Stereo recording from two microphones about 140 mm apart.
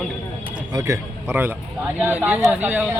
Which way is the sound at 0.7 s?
20° right (ahead or behind).